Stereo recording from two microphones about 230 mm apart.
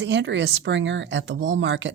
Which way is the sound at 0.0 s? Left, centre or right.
Right.